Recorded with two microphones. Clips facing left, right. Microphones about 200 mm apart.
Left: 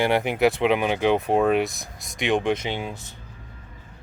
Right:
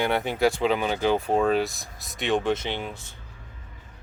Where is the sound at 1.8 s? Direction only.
Centre (ahead or behind).